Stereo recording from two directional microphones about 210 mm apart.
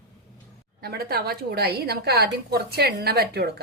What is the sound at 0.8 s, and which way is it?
A woman's voice, 45° right (ahead or behind).